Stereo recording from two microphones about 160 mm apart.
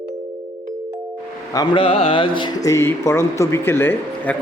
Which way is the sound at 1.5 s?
30° left (ahead or behind).